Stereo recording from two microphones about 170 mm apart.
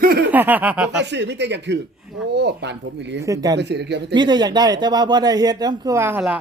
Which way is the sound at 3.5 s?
90° right.